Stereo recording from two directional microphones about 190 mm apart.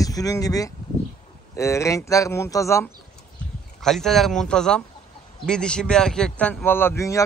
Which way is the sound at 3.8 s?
Centre (ahead or behind).